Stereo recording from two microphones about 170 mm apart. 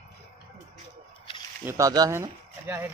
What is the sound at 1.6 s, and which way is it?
Speech, 15° right (ahead or behind).